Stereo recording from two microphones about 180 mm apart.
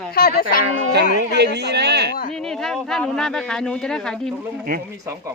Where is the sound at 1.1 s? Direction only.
65° right (ahead or behind).